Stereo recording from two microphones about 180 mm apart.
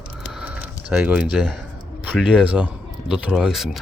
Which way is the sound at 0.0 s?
5° right (ahead or behind).